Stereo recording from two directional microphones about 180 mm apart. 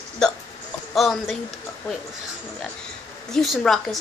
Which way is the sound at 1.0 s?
Centre (ahead or behind).